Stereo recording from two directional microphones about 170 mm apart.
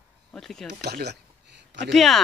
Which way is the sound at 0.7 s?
75° right (ahead or behind).